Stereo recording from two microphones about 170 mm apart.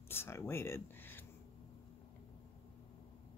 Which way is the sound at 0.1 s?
15° left (ahead or behind).